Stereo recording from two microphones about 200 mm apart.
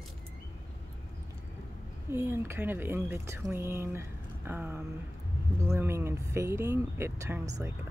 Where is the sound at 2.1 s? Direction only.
10° right (ahead or behind).